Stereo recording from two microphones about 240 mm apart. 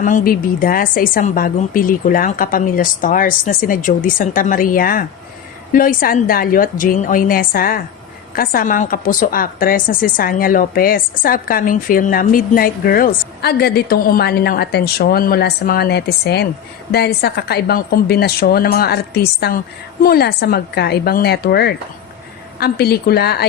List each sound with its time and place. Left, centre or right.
0.0 s a woman's voice: left